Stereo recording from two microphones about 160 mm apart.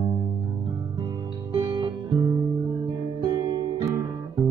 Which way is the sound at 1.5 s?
30° right (ahead or behind).